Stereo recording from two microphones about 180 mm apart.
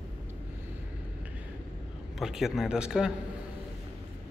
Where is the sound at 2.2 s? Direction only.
Centre (ahead or behind).